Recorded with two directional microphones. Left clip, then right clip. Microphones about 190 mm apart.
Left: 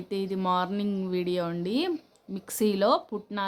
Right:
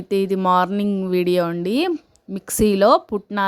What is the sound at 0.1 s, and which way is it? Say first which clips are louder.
A woman's voice: right 10 dB; 45° right (ahead or behind).